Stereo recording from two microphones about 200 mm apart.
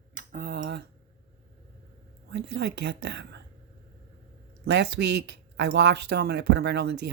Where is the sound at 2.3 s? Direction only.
60° right (ahead or behind).